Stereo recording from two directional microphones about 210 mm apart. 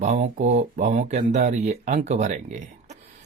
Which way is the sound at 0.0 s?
35° right (ahead or behind).